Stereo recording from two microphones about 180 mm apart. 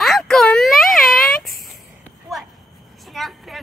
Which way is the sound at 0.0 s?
Centre (ahead or behind).